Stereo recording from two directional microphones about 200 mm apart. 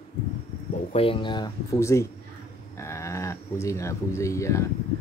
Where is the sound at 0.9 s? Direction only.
25° left (ahead or behind).